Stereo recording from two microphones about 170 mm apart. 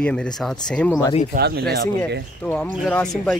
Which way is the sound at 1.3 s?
70° right (ahead or behind).